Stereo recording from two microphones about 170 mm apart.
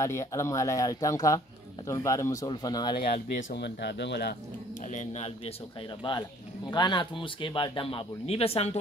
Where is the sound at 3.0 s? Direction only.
40° left (ahead or behind).